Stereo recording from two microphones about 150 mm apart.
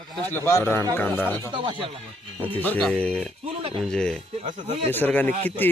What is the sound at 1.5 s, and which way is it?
Speech, 35° right (ahead or behind).